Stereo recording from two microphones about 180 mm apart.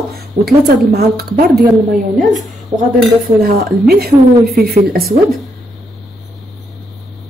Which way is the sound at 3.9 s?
60° right (ahead or behind).